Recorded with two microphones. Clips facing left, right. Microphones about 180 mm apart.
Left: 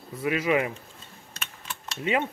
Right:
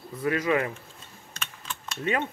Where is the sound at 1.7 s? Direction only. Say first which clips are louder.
Left 1 dB; 15° left (ahead or behind).